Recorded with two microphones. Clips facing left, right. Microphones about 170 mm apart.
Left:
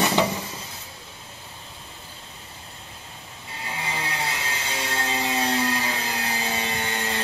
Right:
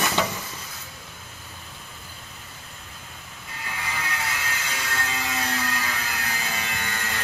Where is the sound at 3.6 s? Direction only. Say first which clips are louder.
Left 2 dB; 30° left (ahead or behind).